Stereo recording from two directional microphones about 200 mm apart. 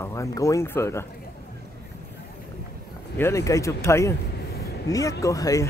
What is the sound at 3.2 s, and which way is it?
Speech, 15° left (ahead or behind).